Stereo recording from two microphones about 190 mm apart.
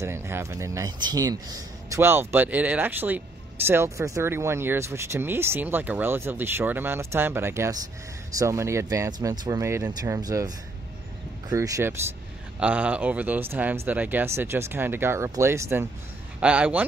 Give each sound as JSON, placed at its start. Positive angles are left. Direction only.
{"t": 0.0, "sound": "speech", "side_deg": -15}